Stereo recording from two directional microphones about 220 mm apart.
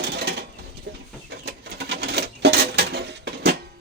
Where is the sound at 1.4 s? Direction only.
50° right (ahead or behind).